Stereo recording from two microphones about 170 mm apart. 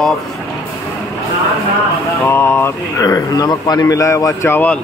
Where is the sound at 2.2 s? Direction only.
10° left (ahead or behind).